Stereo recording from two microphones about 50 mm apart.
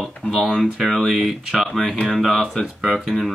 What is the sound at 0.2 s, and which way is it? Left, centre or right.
Speech, left.